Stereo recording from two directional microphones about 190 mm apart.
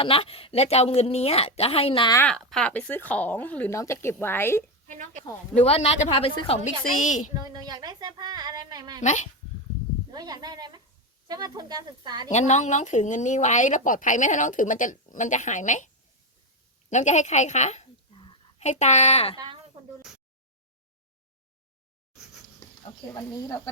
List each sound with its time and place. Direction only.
0.0 s speech: 30° left (ahead or behind)
2.1 s speech: 5° left (ahead or behind)
4.9 s speech: 40° right (ahead or behind)
5.6 s speech: 30° left (ahead or behind)
6.7 s speech: 40° left (ahead or behind)
7.3 s a woman's voice: 20° right (ahead or behind)
9.0 s speech: 40° left (ahead or behind)
10.1 s a woman's voice: 20° right (ahead or behind)
12.3 s speech: 40° left (ahead or behind)
16.9 s a sound: 40° left (ahead or behind)
18.7 s speech: 40° left (ahead or behind)
23.1 s speech: 15° left (ahead or behind)